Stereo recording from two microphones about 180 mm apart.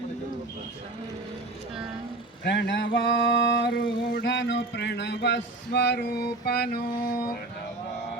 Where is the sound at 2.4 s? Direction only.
90° left; by 6.8 s 60° left (ahead or behind).